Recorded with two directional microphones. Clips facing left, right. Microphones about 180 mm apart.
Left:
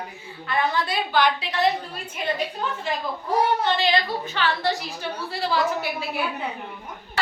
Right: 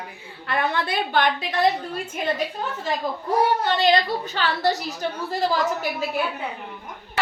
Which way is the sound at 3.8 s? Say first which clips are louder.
Right 3 dB; 40° right (ahead or behind).